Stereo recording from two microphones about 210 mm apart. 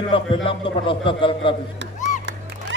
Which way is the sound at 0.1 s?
25° left (ahead or behind).